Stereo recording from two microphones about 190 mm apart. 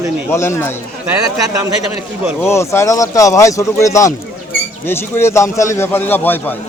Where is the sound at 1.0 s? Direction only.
15° right (ahead or behind).